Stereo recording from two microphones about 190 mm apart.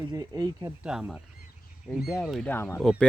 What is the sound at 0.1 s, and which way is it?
Speech, 20° right (ahead or behind).